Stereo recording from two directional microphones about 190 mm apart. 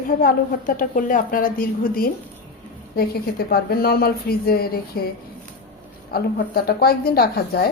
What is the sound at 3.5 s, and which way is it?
A woman's voice, 55° left (ahead or behind).